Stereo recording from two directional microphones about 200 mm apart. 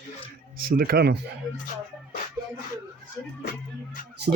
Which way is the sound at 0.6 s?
50° right (ahead or behind).